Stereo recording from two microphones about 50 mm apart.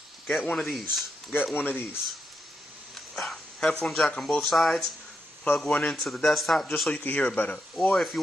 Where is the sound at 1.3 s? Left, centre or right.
Left.